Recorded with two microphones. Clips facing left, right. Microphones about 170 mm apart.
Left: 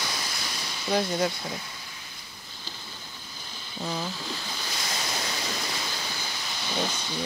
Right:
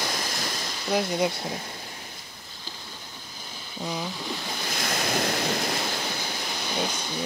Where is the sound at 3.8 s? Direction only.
10° right (ahead or behind).